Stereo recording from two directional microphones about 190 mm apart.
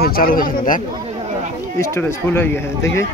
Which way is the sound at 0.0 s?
50° left (ahead or behind).